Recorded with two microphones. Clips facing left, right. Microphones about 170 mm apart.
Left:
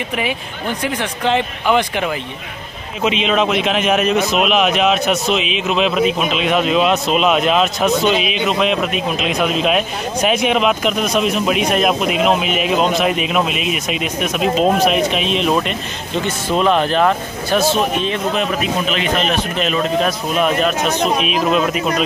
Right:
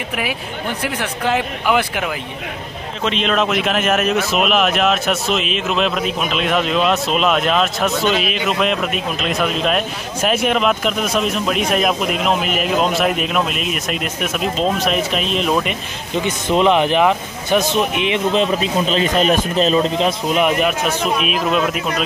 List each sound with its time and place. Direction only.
0.8 s speech: 5° right (ahead or behind)
16.3 s speech: 20° right (ahead or behind)
21.2 s speech: centre (ahead or behind)